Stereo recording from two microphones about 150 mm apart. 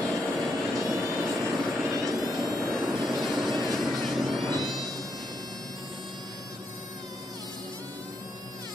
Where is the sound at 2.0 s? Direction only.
25° right (ahead or behind).